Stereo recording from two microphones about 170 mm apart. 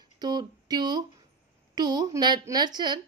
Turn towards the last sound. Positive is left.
turn(degrees=-25)  # may be behind; listen again after turning